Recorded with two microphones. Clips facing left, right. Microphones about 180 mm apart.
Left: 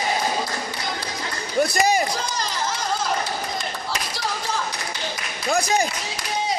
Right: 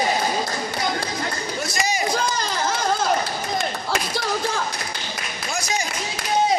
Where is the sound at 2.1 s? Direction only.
55° right (ahead or behind).